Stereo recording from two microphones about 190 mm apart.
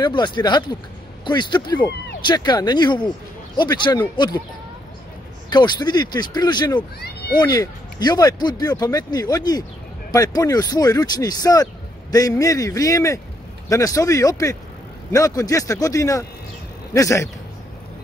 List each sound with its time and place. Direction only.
0.0 s speech: 25° left (ahead or behind)
5.5 s speech: 20° left (ahead or behind)
7.0 s speech: 60° left (ahead or behind)
7.3 s a man's voice: 20° left (ahead or behind)